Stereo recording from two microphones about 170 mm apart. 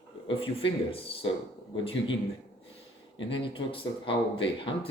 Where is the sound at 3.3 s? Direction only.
30° left (ahead or behind).